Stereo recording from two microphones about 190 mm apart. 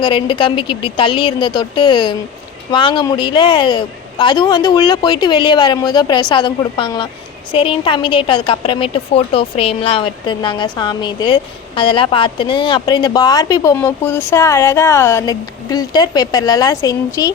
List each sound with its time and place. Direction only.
0.0 s a woman's voice: 25° left (ahead or behind)